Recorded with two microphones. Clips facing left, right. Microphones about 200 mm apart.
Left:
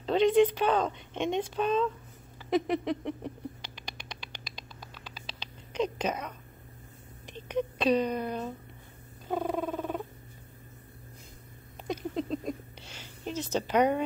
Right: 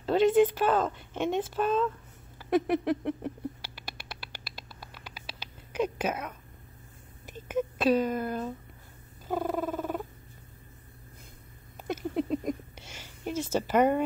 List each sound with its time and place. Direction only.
0.0 s speech: 5° right (ahead or behind)
2.5 s rodents: 5° right (ahead or behind)
7.2 s speech: 5° right (ahead or behind)
9.3 s purr: 5° right (ahead or behind)
11.9 s a sound: 10° right (ahead or behind)